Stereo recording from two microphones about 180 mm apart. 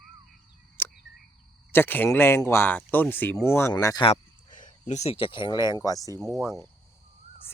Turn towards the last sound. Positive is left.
turn(degrees=0)  # may be behind; listen again after turning